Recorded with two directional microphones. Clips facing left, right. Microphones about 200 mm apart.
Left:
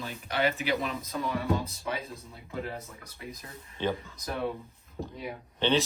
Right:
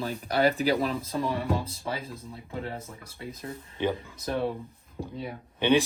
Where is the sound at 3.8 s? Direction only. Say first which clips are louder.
Right 2 dB; 15° right (ahead or behind).